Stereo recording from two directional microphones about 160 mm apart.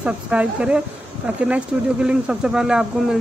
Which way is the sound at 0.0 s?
5° right (ahead or behind).